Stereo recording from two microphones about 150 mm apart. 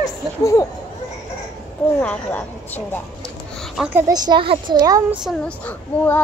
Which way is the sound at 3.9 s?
25° right (ahead or behind).